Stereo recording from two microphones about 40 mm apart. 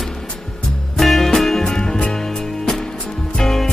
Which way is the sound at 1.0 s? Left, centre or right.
Centre.